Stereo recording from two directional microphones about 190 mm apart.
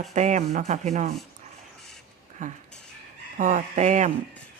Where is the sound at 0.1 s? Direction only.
40° right (ahead or behind).